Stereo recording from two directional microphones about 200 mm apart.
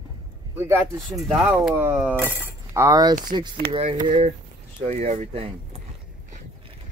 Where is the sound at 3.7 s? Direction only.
30° right (ahead or behind).